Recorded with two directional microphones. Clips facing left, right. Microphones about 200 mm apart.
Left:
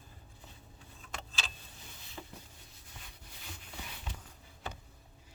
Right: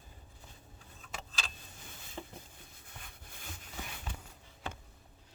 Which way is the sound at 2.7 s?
55° right (ahead or behind).